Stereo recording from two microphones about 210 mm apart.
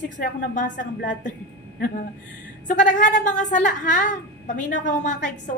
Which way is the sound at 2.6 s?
40° left (ahead or behind).